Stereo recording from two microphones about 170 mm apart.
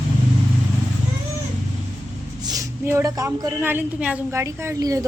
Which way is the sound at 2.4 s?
20° right (ahead or behind).